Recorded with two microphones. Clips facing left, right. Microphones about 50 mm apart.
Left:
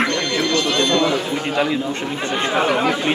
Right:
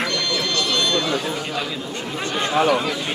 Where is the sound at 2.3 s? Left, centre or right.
Left.